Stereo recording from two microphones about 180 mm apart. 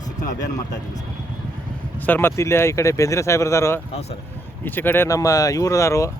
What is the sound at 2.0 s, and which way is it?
Speech, 10° left (ahead or behind).